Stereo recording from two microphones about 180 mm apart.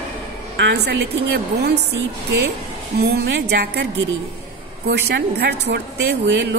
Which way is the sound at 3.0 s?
65° right (ahead or behind).